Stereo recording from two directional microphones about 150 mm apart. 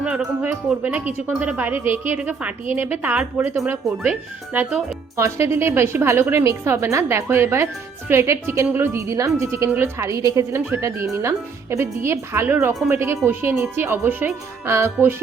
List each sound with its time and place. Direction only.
0.0 s a woman's voice: 10° right (ahead or behind)
5.1 s a woman's voice: 20° right (ahead or behind)